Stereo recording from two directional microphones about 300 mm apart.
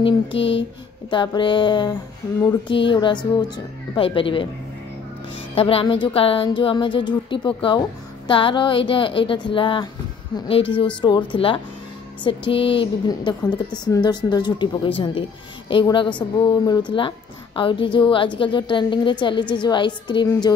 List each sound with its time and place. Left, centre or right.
0.0 s a woman's voice: centre